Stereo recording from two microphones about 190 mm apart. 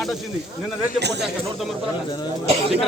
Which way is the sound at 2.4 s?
30° right (ahead or behind).